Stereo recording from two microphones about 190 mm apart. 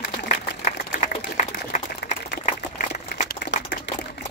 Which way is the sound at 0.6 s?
40° left (ahead or behind).